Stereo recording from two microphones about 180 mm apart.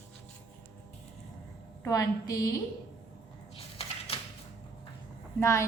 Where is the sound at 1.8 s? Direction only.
20° left (ahead or behind).